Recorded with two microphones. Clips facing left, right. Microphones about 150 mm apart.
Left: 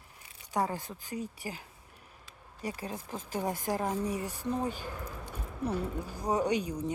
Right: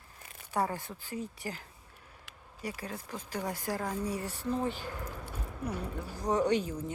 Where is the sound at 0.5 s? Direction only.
15° left (ahead or behind).